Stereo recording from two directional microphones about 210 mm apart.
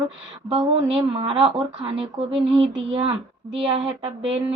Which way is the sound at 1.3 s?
25° right (ahead or behind).